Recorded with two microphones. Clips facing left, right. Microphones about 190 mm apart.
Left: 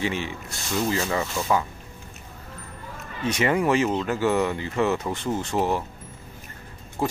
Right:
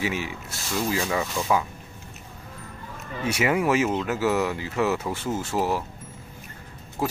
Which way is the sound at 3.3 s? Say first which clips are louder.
Left 1 dB; 10° right (ahead or behind).